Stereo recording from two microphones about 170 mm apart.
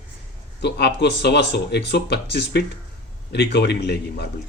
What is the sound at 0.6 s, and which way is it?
A man's voice, 75° left (ahead or behind).